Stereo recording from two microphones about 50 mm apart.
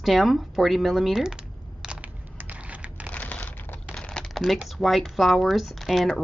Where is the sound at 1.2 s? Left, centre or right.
Centre.